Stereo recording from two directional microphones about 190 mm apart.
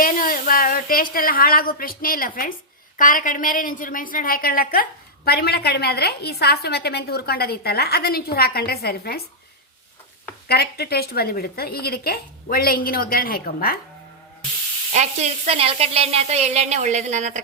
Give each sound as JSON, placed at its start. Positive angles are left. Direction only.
{"t": 0.0, "sound": "a woman's voice", "side_deg": 45}
{"t": 10.5, "sound": "a woman's voice", "side_deg": 55}
{"t": 14.9, "sound": "speech", "side_deg": -35}